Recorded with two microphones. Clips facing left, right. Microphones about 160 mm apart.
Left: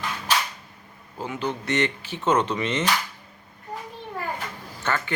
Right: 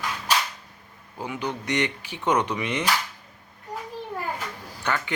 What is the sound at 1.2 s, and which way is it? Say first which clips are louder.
Speech: left 1 dB; 15° right (ahead or behind).